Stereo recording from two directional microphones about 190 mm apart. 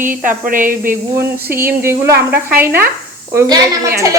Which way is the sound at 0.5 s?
45° right (ahead or behind).